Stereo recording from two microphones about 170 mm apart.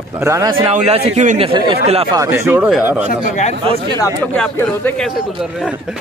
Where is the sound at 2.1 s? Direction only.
15° right (ahead or behind).